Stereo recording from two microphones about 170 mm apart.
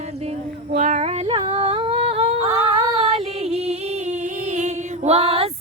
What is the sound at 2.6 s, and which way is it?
Music, 35° right (ahead or behind).